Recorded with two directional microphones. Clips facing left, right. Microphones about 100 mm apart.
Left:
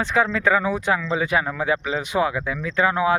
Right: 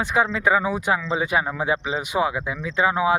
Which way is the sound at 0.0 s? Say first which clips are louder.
Left 1 dB; 15° right (ahead or behind).